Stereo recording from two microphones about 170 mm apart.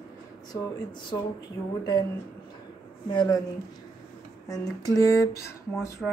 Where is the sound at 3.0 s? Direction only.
25° left (ahead or behind).